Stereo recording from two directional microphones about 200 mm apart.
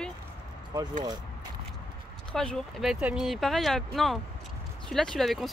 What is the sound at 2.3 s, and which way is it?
Speech, centre (ahead or behind).